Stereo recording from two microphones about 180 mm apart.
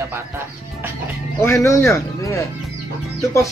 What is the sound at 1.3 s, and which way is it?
Speech, 15° left (ahead or behind).